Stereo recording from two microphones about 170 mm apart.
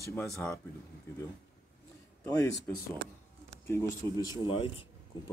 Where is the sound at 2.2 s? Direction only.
10° left (ahead or behind); by 4.7 s 35° left (ahead or behind).